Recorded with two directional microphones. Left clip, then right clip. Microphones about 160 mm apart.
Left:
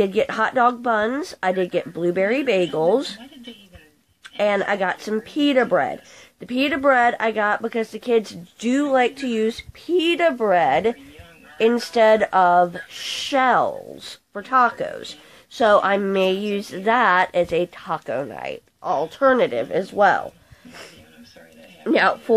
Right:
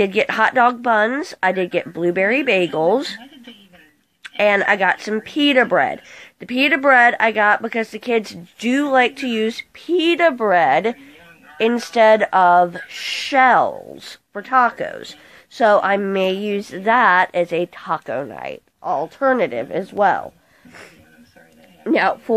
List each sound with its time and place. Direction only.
0.0 s speech: 5° right (ahead or behind)
4.2 s speech: 10° right (ahead or behind)
21.8 s speech: 5° right (ahead or behind)